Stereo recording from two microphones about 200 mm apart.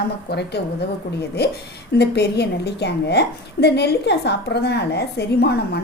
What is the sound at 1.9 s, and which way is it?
A woman's voice, 55° left (ahead or behind).